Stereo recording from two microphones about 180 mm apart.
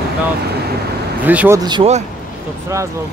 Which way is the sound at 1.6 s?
25° right (ahead or behind).